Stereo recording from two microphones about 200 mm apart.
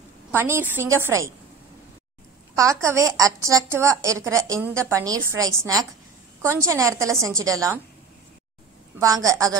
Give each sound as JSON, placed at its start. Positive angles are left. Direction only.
{"t": 0.3, "sound": "a woman's voice", "side_deg": -10}
{"t": 2.5, "sound": "a woman's voice", "side_deg": -15}
{"t": 9.0, "sound": "a woman's voice", "side_deg": -15}